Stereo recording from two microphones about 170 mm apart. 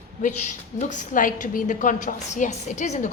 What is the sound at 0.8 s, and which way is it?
A woman's voice, 45° left (ahead or behind).